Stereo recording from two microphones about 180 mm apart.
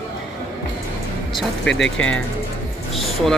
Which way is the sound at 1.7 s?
90° left.